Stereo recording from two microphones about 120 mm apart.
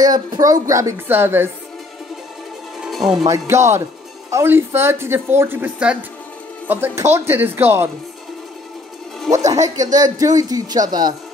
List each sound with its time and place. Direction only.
0.0 s speech: 35° right (ahead or behind)
2.8 s music: 5° right (ahead or behind)
3.3 s speech: 25° right (ahead or behind)
9.4 s speech: 30° right (ahead or behind)